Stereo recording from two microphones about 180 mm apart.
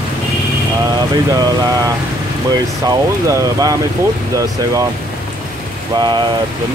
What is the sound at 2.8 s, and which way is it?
Speech, 20° right (ahead or behind).